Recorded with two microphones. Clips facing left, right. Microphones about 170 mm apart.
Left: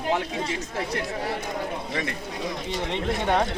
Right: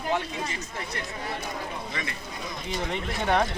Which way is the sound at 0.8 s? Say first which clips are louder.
Left 7 dB; 80° left.